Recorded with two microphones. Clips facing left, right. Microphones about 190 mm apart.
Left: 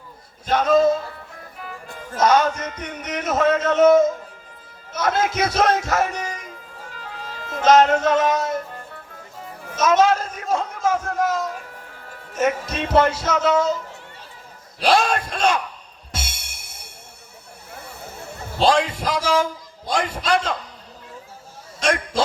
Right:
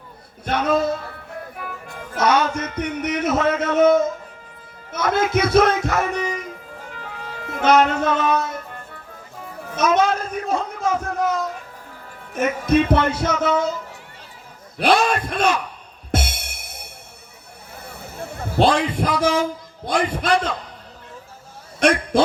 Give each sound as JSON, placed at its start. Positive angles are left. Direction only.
{"t": 0.4, "sound": "a man's voice", "side_deg": -60}
{"t": 4.9, "sound": "speech", "side_deg": -55}
{"t": 6.9, "sound": "music", "side_deg": -55}
{"t": 9.7, "sound": "a sound", "side_deg": -55}
{"t": 12.3, "sound": "speech", "side_deg": -60}
{"t": 14.8, "sound": "speech", "side_deg": -55}
{"t": 16.1, "sound": "music", "side_deg": -55}
{"t": 18.2, "sound": "a man's voice", "side_deg": -55}
{"t": 21.8, "sound": "a sound", "side_deg": -60}